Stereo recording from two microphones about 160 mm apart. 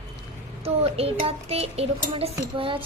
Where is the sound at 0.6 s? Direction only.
40° right (ahead or behind).